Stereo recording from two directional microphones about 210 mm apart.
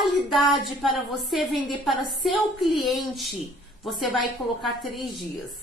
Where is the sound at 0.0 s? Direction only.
Centre (ahead or behind).